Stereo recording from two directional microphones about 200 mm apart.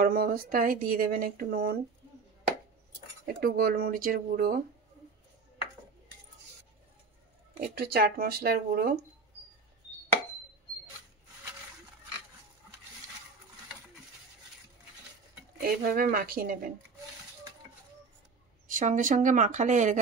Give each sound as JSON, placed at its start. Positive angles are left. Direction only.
{"t": 0.0, "sound": "speech", "side_deg": -45}
{"t": 3.3, "sound": "speech", "side_deg": -50}
{"t": 7.7, "sound": "speech", "side_deg": -50}
{"t": 15.6, "sound": "speech", "side_deg": -45}
{"t": 18.7, "sound": "speech", "side_deg": -40}